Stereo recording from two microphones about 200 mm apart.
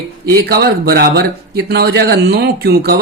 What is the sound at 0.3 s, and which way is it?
Speech, 50° right (ahead or behind).